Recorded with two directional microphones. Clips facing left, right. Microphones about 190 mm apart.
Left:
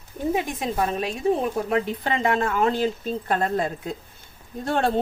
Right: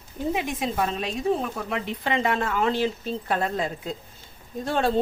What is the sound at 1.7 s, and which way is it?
A woman's voice, 40° left (ahead or behind).